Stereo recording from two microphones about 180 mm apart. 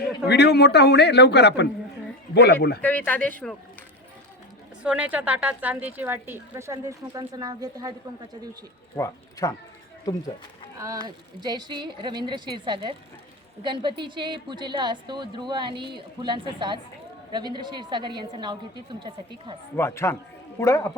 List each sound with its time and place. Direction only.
0.3 s a man's voice: 65° left (ahead or behind)
2.8 s speech: 10° left (ahead or behind)
4.8 s a woman's voice: 5° right (ahead or behind)
9.0 s speech: 20° left (ahead or behind)
10.8 s a woman's voice: 20° right (ahead or behind)
19.7 s speech: 15° left (ahead or behind)